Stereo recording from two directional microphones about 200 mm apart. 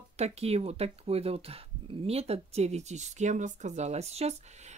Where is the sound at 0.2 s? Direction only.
30° right (ahead or behind).